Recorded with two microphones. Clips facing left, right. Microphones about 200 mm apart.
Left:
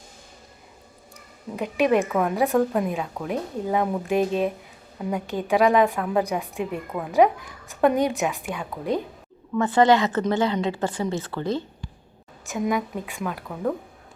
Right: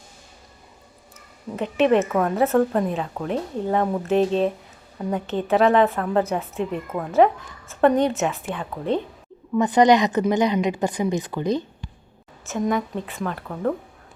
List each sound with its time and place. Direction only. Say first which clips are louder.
1.5 s a woman's voice: right 2 dB; 10° left (ahead or behind)
2.3 s a woman's voice: right 2 dB; 15° left (ahead or behind)
9.6 s a woman's voice: right 2 dB; 15° right (ahead or behind)
12.5 s speech: right 2 dB; 5° left (ahead or behind)